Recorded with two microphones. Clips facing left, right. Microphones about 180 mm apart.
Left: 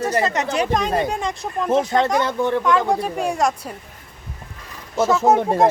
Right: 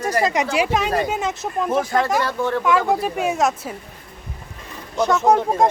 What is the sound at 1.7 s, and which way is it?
Speech, 25° left (ahead or behind).